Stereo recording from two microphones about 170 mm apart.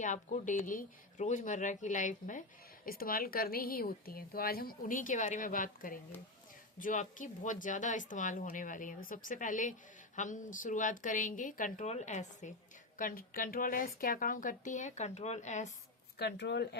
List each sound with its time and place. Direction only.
0.0 s speech: 45° left (ahead or behind)
2.8 s a woman's voice: 60° left (ahead or behind); by 12.5 s 45° left (ahead or behind)
13.0 s speech: 55° left (ahead or behind)
16.1 s speech: 80° left